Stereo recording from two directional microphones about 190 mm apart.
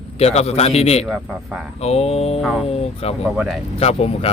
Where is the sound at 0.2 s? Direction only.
35° left (ahead or behind).